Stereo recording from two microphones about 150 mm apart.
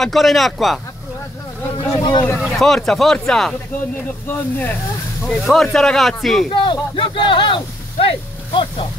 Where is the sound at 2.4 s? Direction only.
Centre (ahead or behind).